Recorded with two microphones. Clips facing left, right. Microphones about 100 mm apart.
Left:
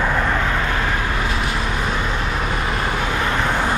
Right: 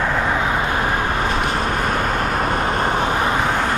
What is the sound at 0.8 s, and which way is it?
Vehicle, 45° right (ahead or behind).